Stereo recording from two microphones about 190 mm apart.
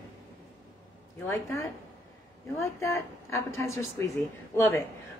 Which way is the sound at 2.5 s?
15° left (ahead or behind).